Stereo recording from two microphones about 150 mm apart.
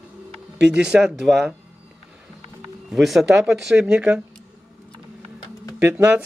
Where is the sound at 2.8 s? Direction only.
Centre (ahead or behind).